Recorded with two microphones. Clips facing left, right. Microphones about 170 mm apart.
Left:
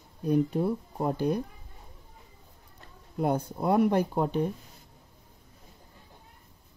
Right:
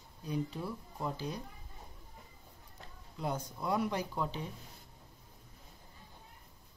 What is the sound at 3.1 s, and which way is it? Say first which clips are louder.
Speech: left 10 dB; 60° left (ahead or behind).